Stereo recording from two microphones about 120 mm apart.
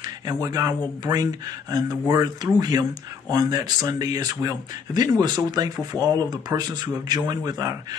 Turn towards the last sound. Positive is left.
turn(degrees=-30)  # may be behind; listen again after turning